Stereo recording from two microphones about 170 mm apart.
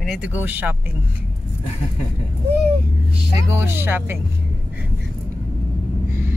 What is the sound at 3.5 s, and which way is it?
Speech, 15° right (ahead or behind).